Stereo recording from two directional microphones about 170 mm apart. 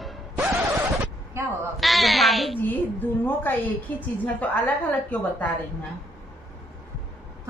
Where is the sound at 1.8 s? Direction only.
Centre (ahead or behind).